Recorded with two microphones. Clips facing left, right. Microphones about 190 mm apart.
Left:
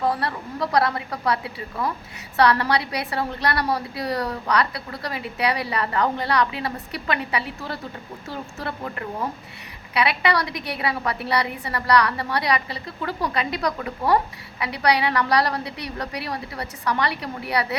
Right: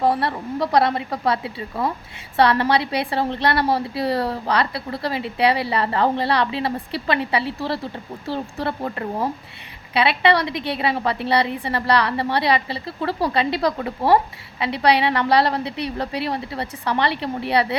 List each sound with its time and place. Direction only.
0.0 s a woman's voice: 25° right (ahead or behind)